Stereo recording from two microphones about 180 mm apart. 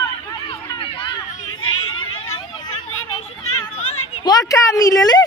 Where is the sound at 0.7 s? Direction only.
25° left (ahead or behind).